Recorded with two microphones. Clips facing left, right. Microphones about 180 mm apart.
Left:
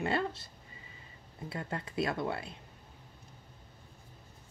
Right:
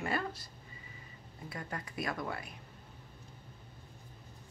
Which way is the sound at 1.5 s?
25° left (ahead or behind).